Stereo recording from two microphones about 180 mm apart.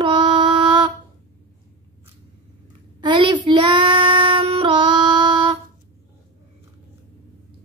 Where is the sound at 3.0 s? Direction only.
25° right (ahead or behind).